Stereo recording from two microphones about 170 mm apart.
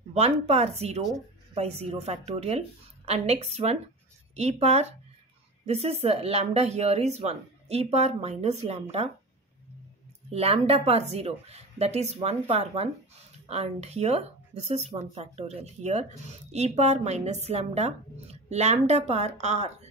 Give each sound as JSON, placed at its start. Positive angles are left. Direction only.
{"t": 0.1, "sound": "speech", "side_deg": -40}
{"t": 10.3, "sound": "speech", "side_deg": -35}